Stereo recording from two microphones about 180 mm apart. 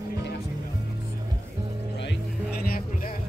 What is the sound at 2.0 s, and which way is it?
Music, 70° left (ahead or behind).